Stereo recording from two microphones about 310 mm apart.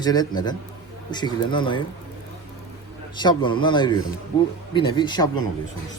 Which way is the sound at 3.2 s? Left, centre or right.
Centre.